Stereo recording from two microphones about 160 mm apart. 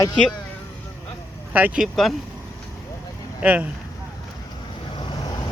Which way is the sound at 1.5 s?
10° right (ahead or behind).